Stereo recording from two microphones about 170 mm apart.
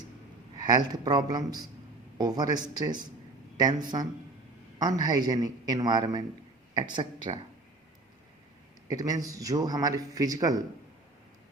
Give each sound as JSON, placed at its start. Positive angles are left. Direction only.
{"t": 0.5, "sound": "a man's voice", "side_deg": -25}
{"t": 8.9, "sound": "a man's voice", "side_deg": -20}